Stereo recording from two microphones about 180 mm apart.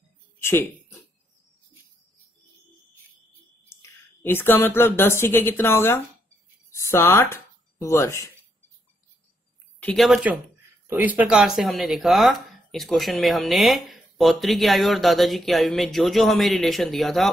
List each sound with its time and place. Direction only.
0.4 s a sound: 15° left (ahead or behind)
4.2 s a woman's voice: 10° left (ahead or behind)
9.8 s speech: 5° left (ahead or behind)